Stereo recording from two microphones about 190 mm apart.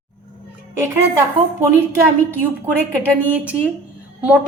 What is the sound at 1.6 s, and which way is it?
A woman's voice, 15° right (ahead or behind).